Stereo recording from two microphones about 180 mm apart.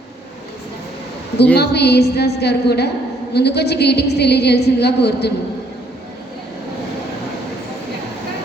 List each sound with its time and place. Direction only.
1.5 s a woman's voice: 65° left (ahead or behind)